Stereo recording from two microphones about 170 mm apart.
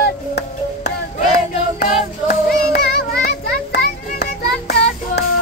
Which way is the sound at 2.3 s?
60° left (ahead or behind).